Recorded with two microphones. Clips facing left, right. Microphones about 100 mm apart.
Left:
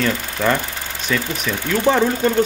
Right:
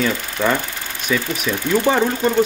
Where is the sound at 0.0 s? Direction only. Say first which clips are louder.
Even; 5° right (ahead or behind).